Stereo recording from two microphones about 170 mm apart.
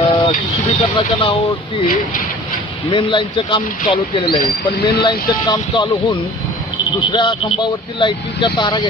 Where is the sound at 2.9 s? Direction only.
30° left (ahead or behind).